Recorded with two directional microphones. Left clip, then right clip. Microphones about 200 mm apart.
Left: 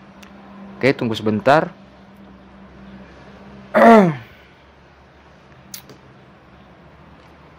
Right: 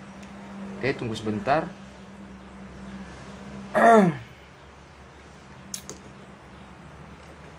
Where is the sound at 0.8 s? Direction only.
50° left (ahead or behind).